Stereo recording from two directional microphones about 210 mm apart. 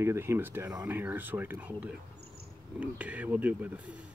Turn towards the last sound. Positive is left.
turn(degrees=-10)  # may be behind; listen again after turning